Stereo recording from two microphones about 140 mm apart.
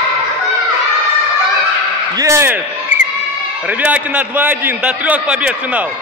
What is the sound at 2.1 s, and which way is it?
Speech, 20° right (ahead or behind).